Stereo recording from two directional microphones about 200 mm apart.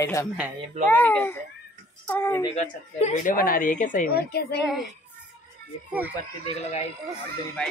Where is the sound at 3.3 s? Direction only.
45° left (ahead or behind).